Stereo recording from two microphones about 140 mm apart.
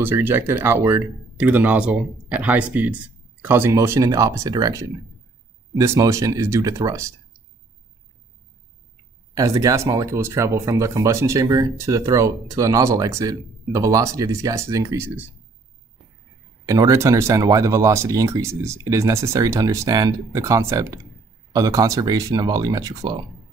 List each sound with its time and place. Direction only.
0.0 s speech: 15° right (ahead or behind)
9.3 s speech: 25° right (ahead or behind)
16.6 s speech: 25° right (ahead or behind)